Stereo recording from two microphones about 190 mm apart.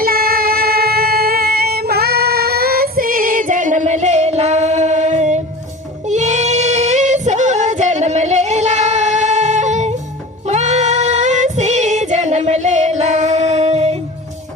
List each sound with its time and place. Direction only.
0.0 s music: 50° right (ahead or behind)
6.1 s female singing: 40° right (ahead or behind)